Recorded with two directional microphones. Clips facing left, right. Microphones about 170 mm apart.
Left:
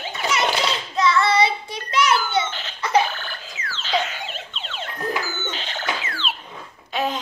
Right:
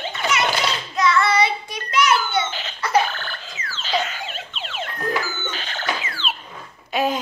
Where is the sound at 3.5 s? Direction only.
Centre (ahead or behind).